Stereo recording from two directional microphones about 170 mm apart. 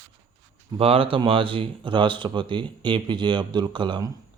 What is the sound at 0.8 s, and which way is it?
Speech, 35° right (ahead or behind).